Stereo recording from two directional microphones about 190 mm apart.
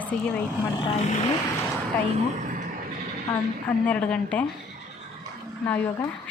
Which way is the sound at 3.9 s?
5° left (ahead or behind).